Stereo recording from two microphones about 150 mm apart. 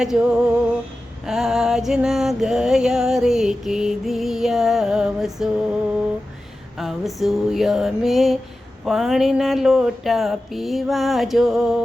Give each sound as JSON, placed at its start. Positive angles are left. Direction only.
{"t": 0.0, "sound": "music", "side_deg": -5}
{"t": 6.7, "sound": "music", "side_deg": 0}